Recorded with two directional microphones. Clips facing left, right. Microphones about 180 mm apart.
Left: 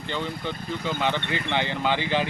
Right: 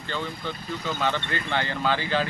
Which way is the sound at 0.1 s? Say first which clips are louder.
Left 1 dB; 15° left (ahead or behind).